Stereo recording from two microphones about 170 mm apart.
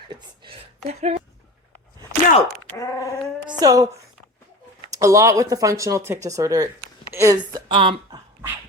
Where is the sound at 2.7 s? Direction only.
20° left (ahead or behind).